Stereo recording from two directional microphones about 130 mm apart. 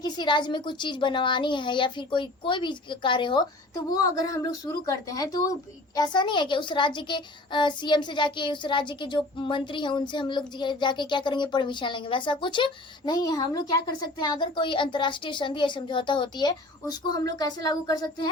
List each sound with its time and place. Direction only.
0.0 s a woman's voice: 35° left (ahead or behind)